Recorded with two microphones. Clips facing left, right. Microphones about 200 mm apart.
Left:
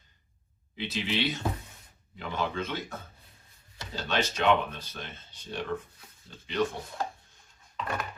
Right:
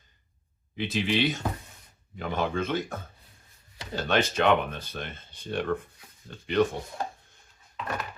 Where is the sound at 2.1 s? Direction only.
50° right (ahead or behind).